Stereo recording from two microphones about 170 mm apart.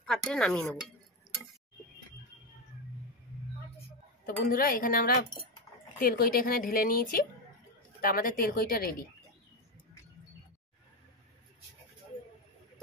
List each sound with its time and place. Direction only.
0.0 s speech: 5° left (ahead or behind)
4.5 s speech: 60° left (ahead or behind)